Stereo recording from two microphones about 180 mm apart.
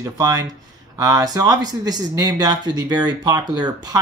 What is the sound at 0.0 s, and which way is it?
Speech, 20° right (ahead or behind).